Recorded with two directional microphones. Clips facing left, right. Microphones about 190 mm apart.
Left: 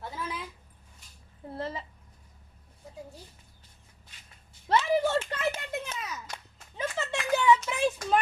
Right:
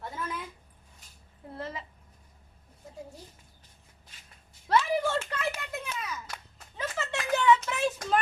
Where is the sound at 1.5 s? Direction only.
30° left (ahead or behind).